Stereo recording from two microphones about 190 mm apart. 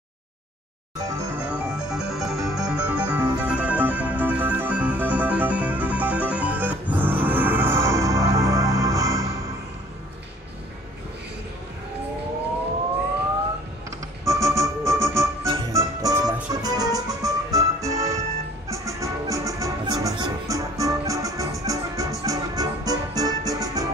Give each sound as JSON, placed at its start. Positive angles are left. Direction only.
{"t": 0.9, "sound": "music", "side_deg": -15}
{"t": 14.2, "sound": "organ", "side_deg": -15}
{"t": 15.4, "sound": "music", "side_deg": -20}